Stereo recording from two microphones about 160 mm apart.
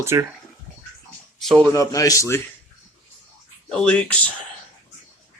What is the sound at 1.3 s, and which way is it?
Speech, centre (ahead or behind).